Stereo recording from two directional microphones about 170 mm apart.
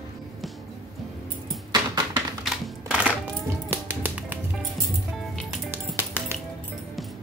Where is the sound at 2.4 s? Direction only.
5° right (ahead or behind).